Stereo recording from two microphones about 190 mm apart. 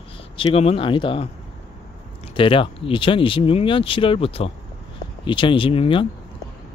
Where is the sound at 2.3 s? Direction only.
25° left (ahead or behind).